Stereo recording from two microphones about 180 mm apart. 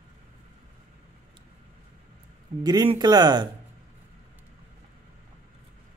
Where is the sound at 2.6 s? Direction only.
25° right (ahead or behind).